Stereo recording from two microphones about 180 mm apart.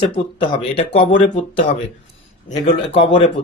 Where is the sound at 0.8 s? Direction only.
45° left (ahead or behind).